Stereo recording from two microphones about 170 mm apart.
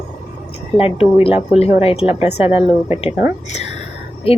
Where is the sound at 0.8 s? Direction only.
35° left (ahead or behind).